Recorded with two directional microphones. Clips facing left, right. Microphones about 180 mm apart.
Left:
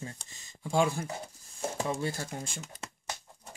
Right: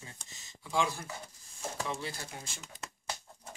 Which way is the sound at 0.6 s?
50° left (ahead or behind).